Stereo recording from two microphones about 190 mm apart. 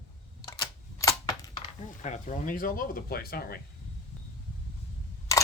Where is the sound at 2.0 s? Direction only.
40° left (ahead or behind).